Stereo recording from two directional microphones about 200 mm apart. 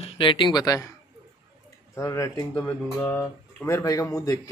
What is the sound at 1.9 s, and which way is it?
Speech, 15° left (ahead or behind).